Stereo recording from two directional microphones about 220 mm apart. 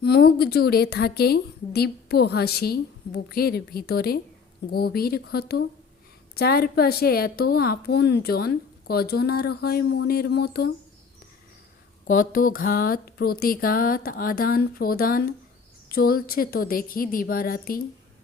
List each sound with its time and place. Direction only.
0.0 s a woman's voice: 45° left (ahead or behind)
12.0 s speech: 40° left (ahead or behind)